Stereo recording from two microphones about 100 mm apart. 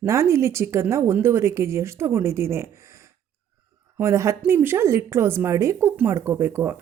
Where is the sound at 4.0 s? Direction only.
30° right (ahead or behind).